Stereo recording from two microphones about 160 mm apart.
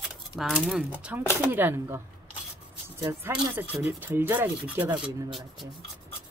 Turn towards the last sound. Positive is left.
turn(degrees=0)  # may be behind; listen again after turning